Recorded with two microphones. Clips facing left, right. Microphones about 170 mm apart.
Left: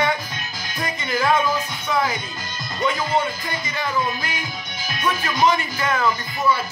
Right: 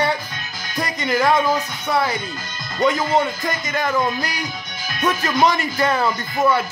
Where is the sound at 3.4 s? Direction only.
45° right (ahead or behind).